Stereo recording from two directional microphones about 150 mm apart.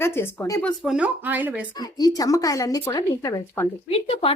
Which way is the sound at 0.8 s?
5° right (ahead or behind).